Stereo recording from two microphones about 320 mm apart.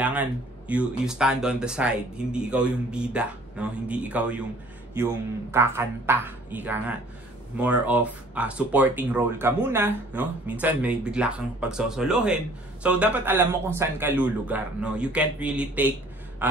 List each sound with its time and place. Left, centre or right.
0.0 s speech: centre